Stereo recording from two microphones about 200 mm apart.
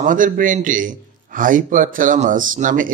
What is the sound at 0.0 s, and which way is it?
A man's voice, 40° right (ahead or behind).